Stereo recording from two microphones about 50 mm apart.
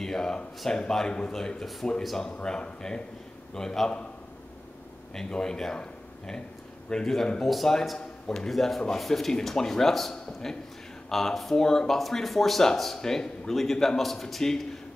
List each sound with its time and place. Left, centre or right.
0.0 s a sound: centre
0.7 s speech: centre
2.3 s speech: centre
5.1 s speech: centre